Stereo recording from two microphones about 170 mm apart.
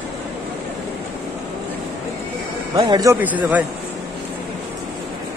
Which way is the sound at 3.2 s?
10° right (ahead or behind).